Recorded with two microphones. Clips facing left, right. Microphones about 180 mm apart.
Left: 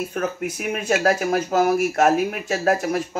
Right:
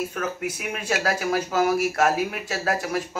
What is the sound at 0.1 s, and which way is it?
Speech, 50° left (ahead or behind).